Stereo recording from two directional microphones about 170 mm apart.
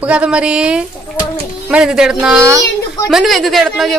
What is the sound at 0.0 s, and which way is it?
A woman's voice, 5° right (ahead or behind).